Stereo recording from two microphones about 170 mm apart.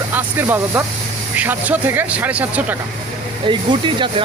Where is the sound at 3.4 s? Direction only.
30° right (ahead or behind).